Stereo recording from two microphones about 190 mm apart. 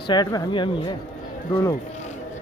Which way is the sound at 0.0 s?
20° left (ahead or behind).